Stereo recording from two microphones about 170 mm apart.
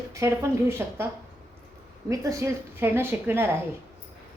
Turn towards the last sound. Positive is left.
turn(degrees=-15)  # may be behind; listen again after turning